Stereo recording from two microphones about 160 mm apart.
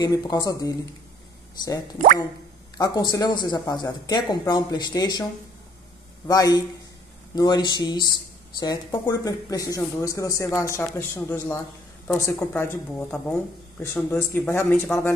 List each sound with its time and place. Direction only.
0.0 s speech: 25° left (ahead or behind)
6.2 s speech: 25° left (ahead or behind)